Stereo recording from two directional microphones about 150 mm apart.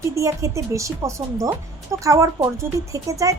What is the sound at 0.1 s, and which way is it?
Speech, 20° right (ahead or behind).